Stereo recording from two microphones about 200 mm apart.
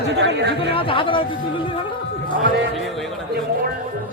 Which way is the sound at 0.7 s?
25° left (ahead or behind).